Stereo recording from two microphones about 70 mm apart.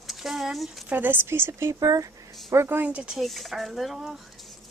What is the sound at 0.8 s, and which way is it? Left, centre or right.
Speech, right.